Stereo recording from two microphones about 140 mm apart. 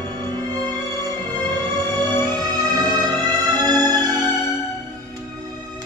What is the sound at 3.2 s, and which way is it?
Music, 30° right (ahead or behind).